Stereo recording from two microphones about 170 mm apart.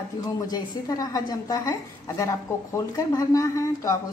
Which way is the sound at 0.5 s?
20° left (ahead or behind).